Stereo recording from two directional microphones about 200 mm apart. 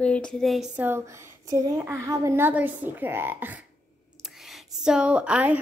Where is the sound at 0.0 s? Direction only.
5° left (ahead or behind).